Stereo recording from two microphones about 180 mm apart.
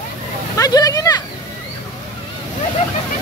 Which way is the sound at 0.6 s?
20° left (ahead or behind).